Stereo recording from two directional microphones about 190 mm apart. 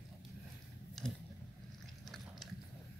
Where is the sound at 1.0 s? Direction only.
Centre (ahead or behind).